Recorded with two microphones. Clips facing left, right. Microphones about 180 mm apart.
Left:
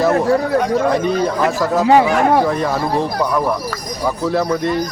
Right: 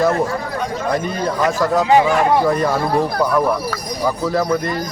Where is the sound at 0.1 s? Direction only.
65° left (ahead or behind).